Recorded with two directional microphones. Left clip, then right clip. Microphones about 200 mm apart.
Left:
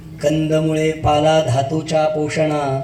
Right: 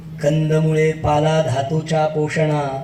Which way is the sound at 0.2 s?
25° left (ahead or behind).